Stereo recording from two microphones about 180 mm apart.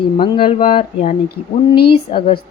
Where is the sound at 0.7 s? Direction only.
40° left (ahead or behind).